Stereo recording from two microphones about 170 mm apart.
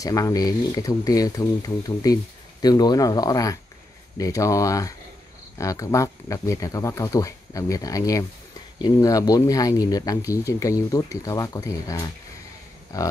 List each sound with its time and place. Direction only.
0.0 s speech: 20° left (ahead or behind)